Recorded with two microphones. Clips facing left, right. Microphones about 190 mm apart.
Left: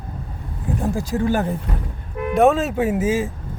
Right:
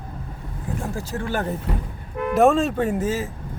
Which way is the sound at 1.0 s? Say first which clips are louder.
Left 7 dB; 15° left (ahead or behind).